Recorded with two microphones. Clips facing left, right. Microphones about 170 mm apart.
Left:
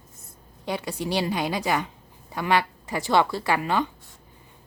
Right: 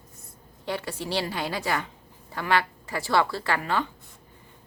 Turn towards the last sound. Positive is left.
turn(degrees=15)  # may be behind; listen again after turning